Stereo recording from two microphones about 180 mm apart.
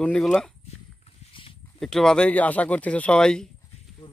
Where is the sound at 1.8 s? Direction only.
5° left (ahead or behind).